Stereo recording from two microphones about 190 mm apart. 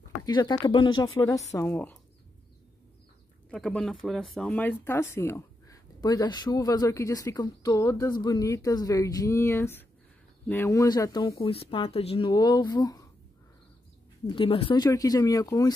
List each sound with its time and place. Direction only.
0.2 s speech: 25° left (ahead or behind)
3.4 s speech: 5° left (ahead or behind)
14.2 s speech: 25° left (ahead or behind)